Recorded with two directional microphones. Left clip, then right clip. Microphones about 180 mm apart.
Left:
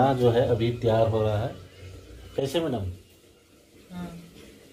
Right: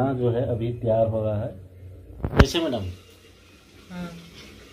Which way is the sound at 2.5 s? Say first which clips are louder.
Right 2 dB; 40° right (ahead or behind).